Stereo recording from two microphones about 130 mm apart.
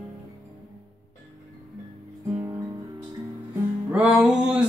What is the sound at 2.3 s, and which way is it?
Guitar, 25° right (ahead or behind).